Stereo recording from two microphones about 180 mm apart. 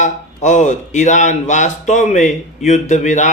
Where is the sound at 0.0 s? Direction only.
40° left (ahead or behind).